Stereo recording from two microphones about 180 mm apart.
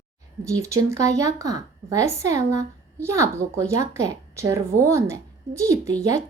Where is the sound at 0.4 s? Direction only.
15° right (ahead or behind).